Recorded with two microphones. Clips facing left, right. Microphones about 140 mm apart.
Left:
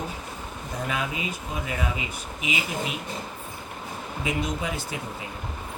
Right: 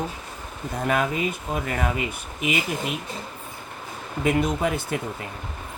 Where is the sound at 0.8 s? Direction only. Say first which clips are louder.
Right 7 dB; 50° right (ahead or behind).